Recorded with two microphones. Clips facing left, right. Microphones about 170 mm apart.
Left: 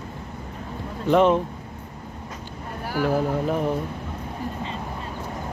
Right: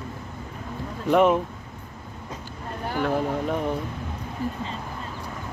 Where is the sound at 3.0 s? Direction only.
5° left (ahead or behind).